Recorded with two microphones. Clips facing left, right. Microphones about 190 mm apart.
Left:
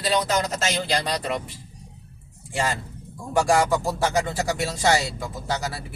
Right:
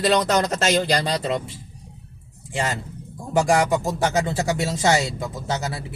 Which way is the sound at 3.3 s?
20° right (ahead or behind).